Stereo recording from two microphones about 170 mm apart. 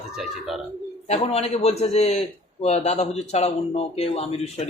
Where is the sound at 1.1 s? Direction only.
40° left (ahead or behind).